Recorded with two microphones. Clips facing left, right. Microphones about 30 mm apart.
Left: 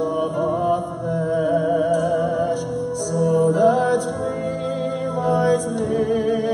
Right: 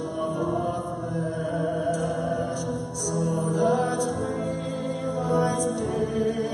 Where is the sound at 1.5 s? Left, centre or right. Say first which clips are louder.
Left 8 dB; centre.